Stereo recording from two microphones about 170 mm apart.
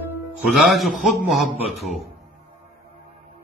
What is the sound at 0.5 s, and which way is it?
Speech, centre (ahead or behind).